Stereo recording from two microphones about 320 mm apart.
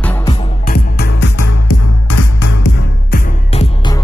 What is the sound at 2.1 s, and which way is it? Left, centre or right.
Music, left.